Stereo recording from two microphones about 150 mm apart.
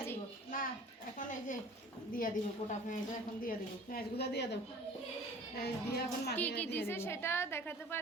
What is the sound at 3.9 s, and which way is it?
Speech, 90° left.